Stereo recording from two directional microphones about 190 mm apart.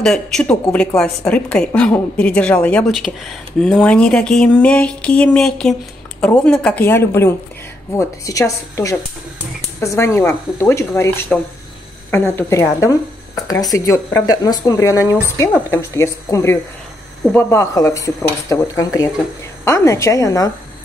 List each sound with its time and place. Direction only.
0.0 s a woman's voice: 5° left (ahead or behind)